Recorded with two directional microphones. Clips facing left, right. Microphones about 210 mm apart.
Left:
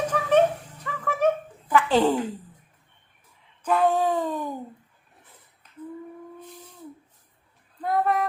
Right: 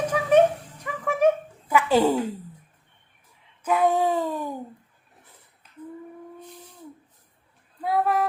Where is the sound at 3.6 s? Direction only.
10° right (ahead or behind).